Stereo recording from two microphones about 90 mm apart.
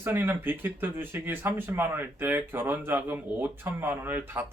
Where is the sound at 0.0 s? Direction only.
25° right (ahead or behind).